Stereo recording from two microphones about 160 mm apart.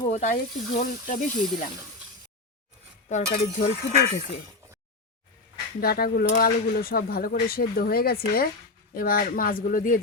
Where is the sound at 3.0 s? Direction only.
50° left (ahead or behind).